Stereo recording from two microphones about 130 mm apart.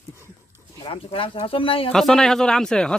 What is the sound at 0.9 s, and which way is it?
Speech, 45° left (ahead or behind).